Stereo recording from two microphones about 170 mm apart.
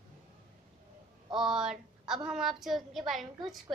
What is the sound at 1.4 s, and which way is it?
A woman's voice, 5° right (ahead or behind).